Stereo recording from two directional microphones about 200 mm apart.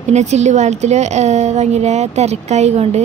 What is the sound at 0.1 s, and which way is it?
A woman's voice, 35° right (ahead or behind).